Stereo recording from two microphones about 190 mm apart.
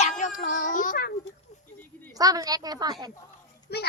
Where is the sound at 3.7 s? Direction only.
60° left (ahead or behind).